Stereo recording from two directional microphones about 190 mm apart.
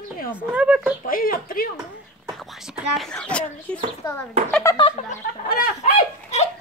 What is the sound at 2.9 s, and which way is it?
Speech, 5° left (ahead or behind).